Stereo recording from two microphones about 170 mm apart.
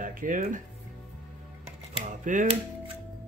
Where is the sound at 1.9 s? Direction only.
50° right (ahead or behind).